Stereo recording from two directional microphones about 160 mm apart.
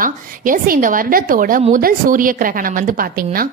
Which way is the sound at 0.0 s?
60° right (ahead or behind).